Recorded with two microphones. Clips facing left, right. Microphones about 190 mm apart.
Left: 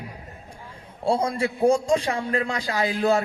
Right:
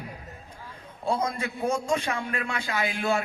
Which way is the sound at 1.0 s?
30° left (ahead or behind).